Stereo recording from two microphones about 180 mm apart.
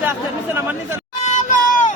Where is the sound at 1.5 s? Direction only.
45° left (ahead or behind).